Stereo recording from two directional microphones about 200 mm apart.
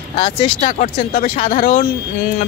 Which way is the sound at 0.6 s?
40° left (ahead or behind).